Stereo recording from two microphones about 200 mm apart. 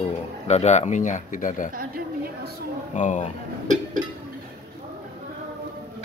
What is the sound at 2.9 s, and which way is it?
Speech, 40° left (ahead or behind).